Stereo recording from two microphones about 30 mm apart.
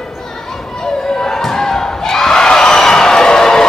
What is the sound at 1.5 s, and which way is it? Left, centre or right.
Crowd, centre.